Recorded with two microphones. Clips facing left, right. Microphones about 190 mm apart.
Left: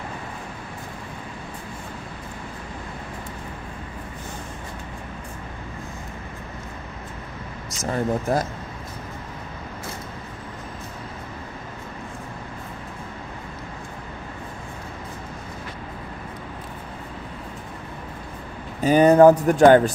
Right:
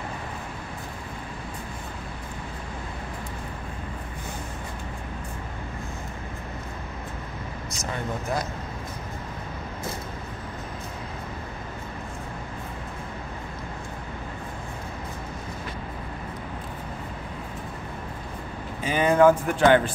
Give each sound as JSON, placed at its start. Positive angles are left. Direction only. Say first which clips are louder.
{"t": 7.9, "sound": "speech", "louder": "left 7 dB", "side_deg": 40}
{"t": 18.8, "sound": "speech", "louder": "left 6 dB", "side_deg": 40}